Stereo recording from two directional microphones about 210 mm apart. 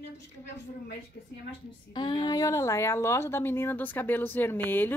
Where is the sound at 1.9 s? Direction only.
20° left (ahead or behind).